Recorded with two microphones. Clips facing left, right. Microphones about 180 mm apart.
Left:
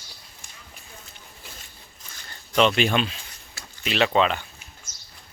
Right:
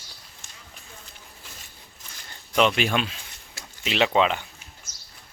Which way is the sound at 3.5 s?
20° right (ahead or behind).